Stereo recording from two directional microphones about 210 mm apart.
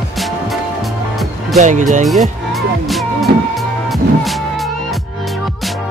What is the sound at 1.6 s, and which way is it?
Speech, 35° right (ahead or behind).